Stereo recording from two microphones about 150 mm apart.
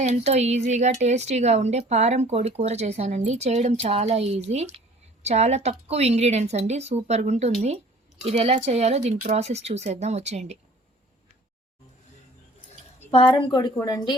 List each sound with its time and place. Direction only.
0.0 s speech: 45° right (ahead or behind)
13.1 s a woman's voice: 35° left (ahead or behind)